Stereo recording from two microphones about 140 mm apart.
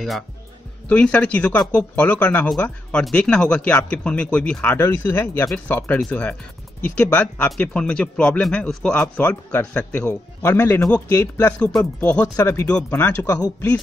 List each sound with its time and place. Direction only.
0.8 s speech: 10° left (ahead or behind)